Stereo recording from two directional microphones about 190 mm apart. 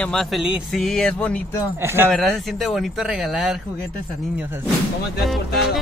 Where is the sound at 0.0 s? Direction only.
Centre (ahead or behind).